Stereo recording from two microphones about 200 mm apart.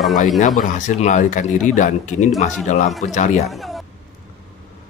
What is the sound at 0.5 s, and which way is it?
Speech, 40° left (ahead or behind).